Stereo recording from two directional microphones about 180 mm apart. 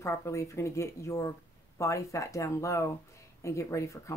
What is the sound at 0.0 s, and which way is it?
Speech, 15° left (ahead or behind).